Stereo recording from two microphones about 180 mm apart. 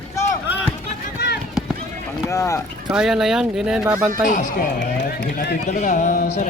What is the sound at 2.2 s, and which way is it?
Speech, 15° left (ahead or behind).